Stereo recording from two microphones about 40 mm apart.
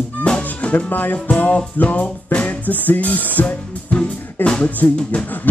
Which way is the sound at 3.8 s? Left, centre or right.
Left.